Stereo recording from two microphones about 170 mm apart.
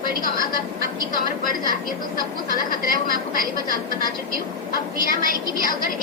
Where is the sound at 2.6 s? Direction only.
55° left (ahead or behind).